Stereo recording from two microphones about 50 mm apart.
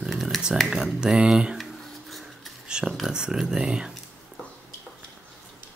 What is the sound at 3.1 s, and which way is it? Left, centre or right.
Speech, centre.